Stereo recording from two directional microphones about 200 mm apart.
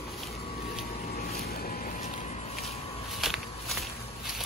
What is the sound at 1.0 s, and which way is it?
Vehicle, 50° left (ahead or behind).